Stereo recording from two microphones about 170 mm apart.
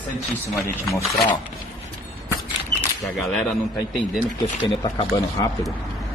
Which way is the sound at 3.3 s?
Centre (ahead or behind).